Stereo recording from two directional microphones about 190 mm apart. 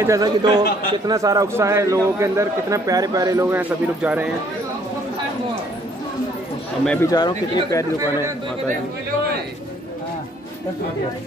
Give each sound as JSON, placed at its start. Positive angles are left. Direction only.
{"t": 0.0, "sound": "a man's voice", "side_deg": -20}
{"t": 6.8, "sound": "speech", "side_deg": 5}
{"t": 7.1, "sound": "speech", "side_deg": 20}